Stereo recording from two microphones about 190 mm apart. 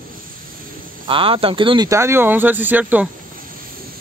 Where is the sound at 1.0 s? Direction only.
25° right (ahead or behind); by 3.1 s 10° right (ahead or behind).